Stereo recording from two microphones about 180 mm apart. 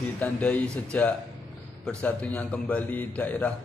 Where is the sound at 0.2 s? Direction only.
10° left (ahead or behind).